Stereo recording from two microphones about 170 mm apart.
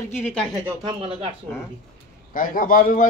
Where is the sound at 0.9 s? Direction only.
30° right (ahead or behind).